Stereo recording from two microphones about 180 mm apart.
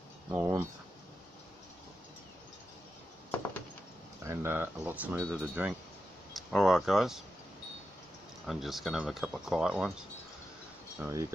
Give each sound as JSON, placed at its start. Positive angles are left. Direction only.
{"t": 0.3, "sound": "speech", "side_deg": -10}
{"t": 4.2, "sound": "speech", "side_deg": -15}
{"t": 8.5, "sound": "speech", "side_deg": 0}
{"t": 11.0, "sound": "speech", "side_deg": -15}